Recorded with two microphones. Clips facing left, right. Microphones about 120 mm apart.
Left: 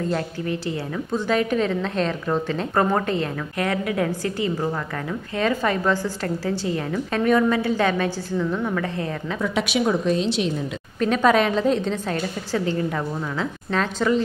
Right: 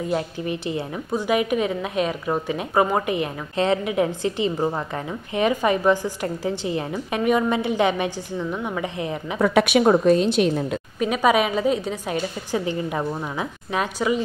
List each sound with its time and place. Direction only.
0.0 s a woman's voice: 15° right (ahead or behind)
9.4 s a woman's voice: 60° right (ahead or behind)
11.0 s a woman's voice: 10° right (ahead or behind)